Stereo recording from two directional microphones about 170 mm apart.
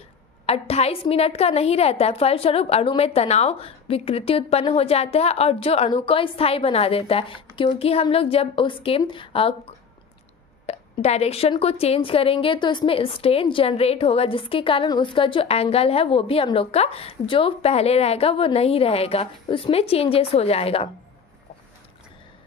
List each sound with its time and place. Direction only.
0.5 s a woman's voice: 35° left (ahead or behind)
10.7 s a woman's voice: 40° left (ahead or behind)